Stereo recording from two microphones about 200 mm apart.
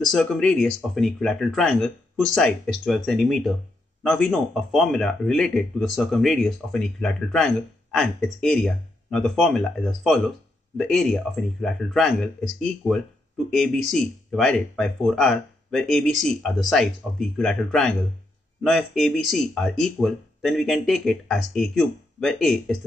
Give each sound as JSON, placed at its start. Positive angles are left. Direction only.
{"t": 0.0, "sound": "speech", "side_deg": 5}